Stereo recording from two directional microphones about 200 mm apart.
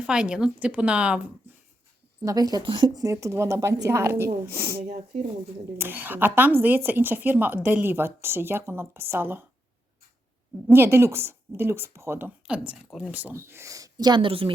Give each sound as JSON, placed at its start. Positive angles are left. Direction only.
{"t": 0.0, "sound": "a woman's voice", "side_deg": -5}
{"t": 2.2, "sound": "speech", "side_deg": -20}
{"t": 10.7, "sound": "a woman's voice", "side_deg": -10}